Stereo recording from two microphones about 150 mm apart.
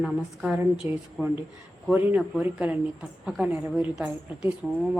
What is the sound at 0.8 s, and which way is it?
A woman's voice, 15° right (ahead or behind).